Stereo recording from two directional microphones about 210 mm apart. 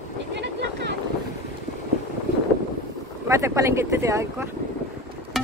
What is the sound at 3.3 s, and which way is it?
Speech, 15° right (ahead or behind).